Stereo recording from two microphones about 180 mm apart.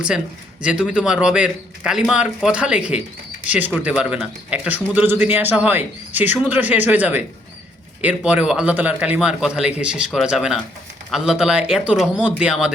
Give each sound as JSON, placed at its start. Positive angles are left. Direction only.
{"t": 0.6, "sound": "a man's voice", "side_deg": -5}
{"t": 12.0, "sound": "speech", "side_deg": 5}
{"t": 12.4, "sound": "a man's voice", "side_deg": -5}